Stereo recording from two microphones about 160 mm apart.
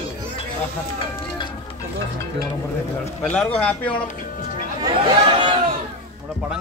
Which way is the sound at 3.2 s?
5° left (ahead or behind).